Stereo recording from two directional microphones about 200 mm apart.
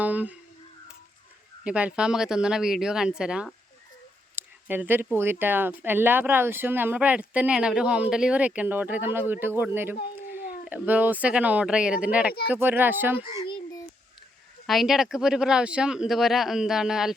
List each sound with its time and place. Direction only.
0.0 s speech: 5° right (ahead or behind)
1.6 s speech: 5° right (ahead or behind)
4.7 s speech: 10° right (ahead or behind)
13.4 s a sound: 20° left (ahead or behind)
14.7 s speech: centre (ahead or behind)